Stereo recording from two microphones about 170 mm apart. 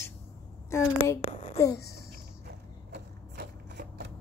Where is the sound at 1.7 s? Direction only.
70° left (ahead or behind).